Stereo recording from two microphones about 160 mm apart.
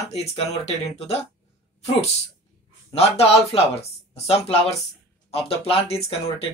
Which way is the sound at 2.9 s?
40° left (ahead or behind).